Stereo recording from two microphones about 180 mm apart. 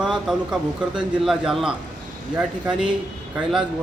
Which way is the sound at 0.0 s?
5° right (ahead or behind).